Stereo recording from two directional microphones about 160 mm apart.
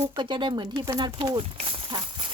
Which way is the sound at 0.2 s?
30° right (ahead or behind).